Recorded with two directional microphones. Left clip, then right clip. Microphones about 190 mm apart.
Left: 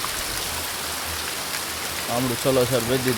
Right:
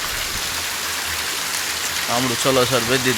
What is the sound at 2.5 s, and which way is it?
Speech, centre (ahead or behind).